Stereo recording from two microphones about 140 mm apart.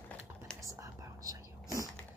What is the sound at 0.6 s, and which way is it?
Whispering, 25° right (ahead or behind).